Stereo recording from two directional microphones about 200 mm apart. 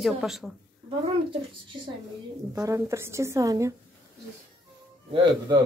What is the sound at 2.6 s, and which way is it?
A woman's voice, 15° right (ahead or behind).